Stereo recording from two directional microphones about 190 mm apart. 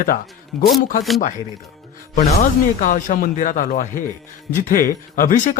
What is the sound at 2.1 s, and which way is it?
Speech, 40° left (ahead or behind).